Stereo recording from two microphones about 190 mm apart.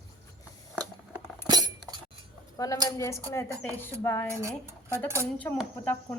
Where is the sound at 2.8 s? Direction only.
15° left (ahead or behind).